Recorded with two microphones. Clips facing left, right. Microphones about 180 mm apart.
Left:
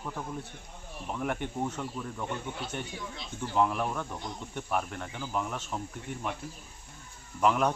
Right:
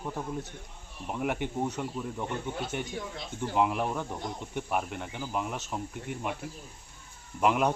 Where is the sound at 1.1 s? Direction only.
15° right (ahead or behind).